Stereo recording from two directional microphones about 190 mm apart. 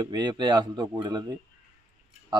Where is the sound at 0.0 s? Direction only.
20° right (ahead or behind).